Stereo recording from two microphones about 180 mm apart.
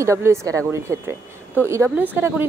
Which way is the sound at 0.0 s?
15° right (ahead or behind).